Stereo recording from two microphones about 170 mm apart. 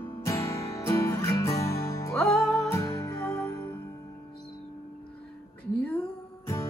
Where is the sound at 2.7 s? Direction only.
20° left (ahead or behind).